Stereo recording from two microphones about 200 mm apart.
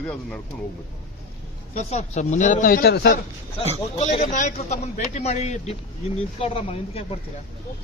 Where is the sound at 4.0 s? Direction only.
35° left (ahead or behind).